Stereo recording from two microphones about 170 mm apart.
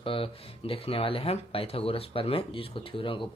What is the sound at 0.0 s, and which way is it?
Speech, 30° left (ahead or behind).